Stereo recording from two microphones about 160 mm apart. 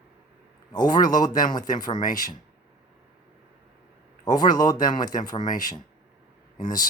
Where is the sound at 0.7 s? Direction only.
25° left (ahead or behind).